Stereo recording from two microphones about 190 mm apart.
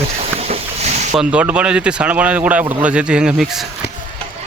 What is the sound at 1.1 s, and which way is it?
Speech, 5° right (ahead or behind).